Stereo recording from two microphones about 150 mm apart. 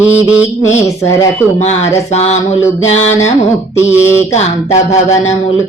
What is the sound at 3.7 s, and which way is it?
Mantra, 10° right (ahead or behind).